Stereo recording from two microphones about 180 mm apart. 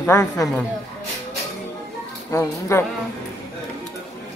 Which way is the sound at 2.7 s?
15° left (ahead or behind).